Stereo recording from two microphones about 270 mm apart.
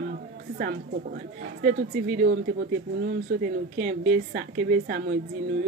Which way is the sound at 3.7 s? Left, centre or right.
Right.